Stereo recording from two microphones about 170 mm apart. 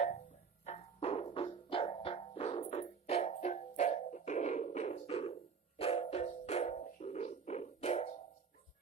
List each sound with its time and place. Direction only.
0.6 s music: 40° left (ahead or behind)